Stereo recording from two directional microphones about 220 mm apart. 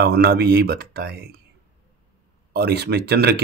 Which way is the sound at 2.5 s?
50° right (ahead or behind).